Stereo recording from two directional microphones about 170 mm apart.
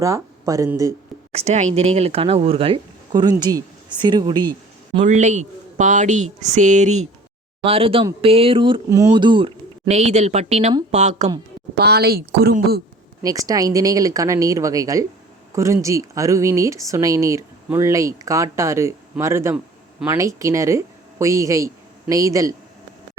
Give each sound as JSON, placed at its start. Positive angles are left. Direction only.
{"t": 0.0, "sound": "speech", "side_deg": -20}
{"t": 1.3, "sound": "speech", "side_deg": -40}
{"t": 5.0, "sound": "speech", "side_deg": -45}
{"t": 7.6, "sound": "speech", "side_deg": -35}
{"t": 8.9, "sound": "speech", "side_deg": -20}
{"t": 11.7, "sound": "a woman's voice", "side_deg": -70}
{"t": 13.2, "sound": "speech", "side_deg": -20}